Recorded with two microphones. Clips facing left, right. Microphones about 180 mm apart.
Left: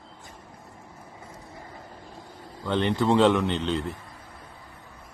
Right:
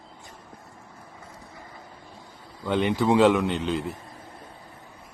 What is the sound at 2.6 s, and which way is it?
A man's voice, 10° right (ahead or behind).